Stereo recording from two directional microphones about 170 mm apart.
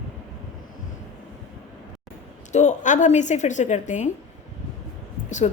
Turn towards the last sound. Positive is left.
turn(degrees=45)  # may be behind; listen again after turning